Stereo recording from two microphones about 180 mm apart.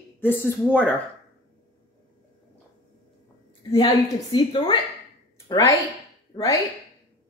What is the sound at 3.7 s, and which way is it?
A woman's voice, 25° left (ahead or behind).